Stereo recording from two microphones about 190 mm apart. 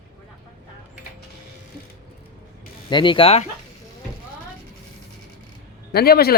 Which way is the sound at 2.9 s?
25° left (ahead or behind).